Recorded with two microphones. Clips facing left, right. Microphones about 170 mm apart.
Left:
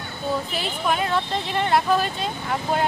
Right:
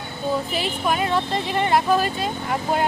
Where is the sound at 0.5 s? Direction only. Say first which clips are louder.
Right 1 dB; 5° right (ahead or behind).